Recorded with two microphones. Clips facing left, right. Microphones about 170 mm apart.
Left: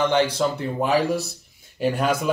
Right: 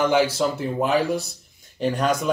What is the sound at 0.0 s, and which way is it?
Speech, 5° right (ahead or behind).